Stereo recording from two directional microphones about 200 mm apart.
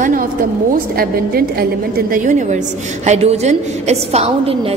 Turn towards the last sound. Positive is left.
turn(degrees=-30)  # may be behind; listen again after turning